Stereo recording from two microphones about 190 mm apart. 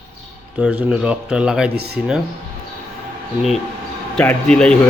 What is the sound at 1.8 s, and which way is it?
Speech, 55° right (ahead or behind).